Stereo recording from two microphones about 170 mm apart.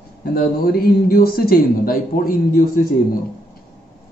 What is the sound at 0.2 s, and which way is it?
Speech, 65° left (ahead or behind).